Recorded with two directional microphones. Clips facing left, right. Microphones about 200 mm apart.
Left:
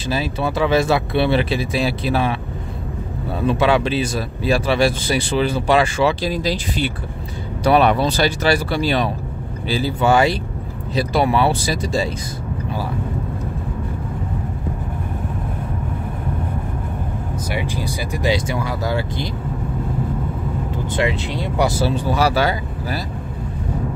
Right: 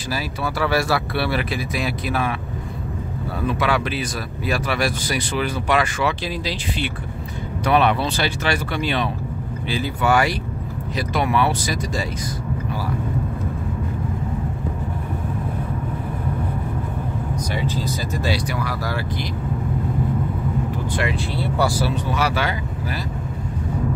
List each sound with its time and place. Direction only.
0.1 s speech: 25° left (ahead or behind)
3.3 s speech: 25° left (ahead or behind)
6.3 s speech: 45° left (ahead or behind); by 12.1 s 30° left (ahead or behind)
17.5 s speech: 15° left (ahead or behind)
20.9 s speech: 25° left (ahead or behind)